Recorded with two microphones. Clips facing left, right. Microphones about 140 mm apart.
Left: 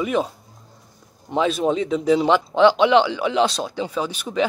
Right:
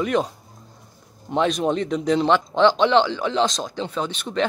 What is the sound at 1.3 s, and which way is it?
Speech, 5° left (ahead or behind).